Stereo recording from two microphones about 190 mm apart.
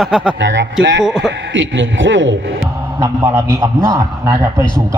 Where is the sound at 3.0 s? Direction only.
15° right (ahead or behind).